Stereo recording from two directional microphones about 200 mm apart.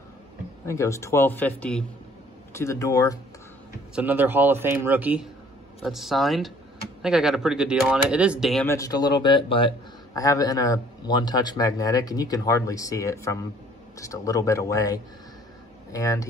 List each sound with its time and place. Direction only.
0.7 s speech: 15° left (ahead or behind)
3.9 s a man's voice: 10° right (ahead or behind)
8.6 s speech: 15° left (ahead or behind)